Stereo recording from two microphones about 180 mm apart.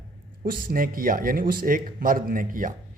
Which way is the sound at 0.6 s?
50° right (ahead or behind).